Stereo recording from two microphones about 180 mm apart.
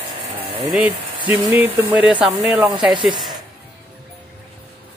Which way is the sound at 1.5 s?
10° right (ahead or behind).